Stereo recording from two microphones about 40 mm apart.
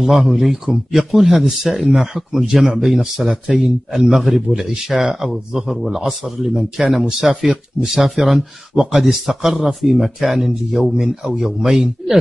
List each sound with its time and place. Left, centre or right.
0.0 s a man's voice: centre
3.3 s a man's voice: centre
3.6 s a man's voice: centre
11.0 s a man's voice: centre